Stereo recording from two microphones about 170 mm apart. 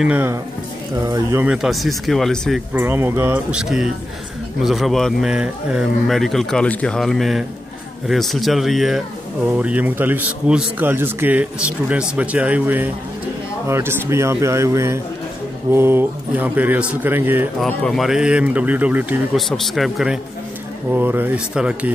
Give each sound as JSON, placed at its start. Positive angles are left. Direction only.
{"t": 0.0, "sound": "speech", "side_deg": -10}
{"t": 1.5, "sound": "speech", "side_deg": 0}
{"t": 2.7, "sound": "speech", "side_deg": -15}
{"t": 17.6, "sound": "speech", "side_deg": 5}
{"t": 20.9, "sound": "speech", "side_deg": -10}